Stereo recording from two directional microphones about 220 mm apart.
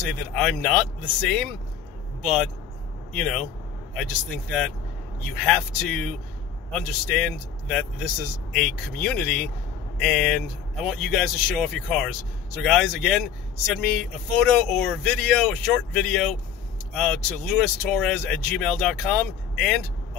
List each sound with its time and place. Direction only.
0.3 s a man's voice: 5° left (ahead or behind)